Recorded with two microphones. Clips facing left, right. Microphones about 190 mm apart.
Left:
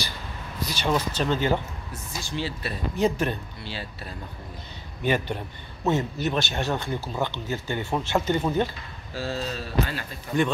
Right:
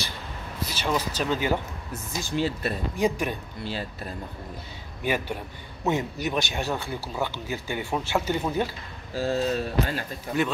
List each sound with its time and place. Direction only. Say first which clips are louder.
0.7 s speech: left 2 dB; 5° right (ahead or behind)
2.2 s speech: right 5 dB; 45° right (ahead or behind)
3.0 s speech: left 2 dB; 10° right (ahead or behind)
3.6 s speech: right 6 dB; 45° right (ahead or behind)
5.0 s speech: left 2 dB; 10° right (ahead or behind)
9.1 s speech: right 5 dB; 45° right (ahead or behind)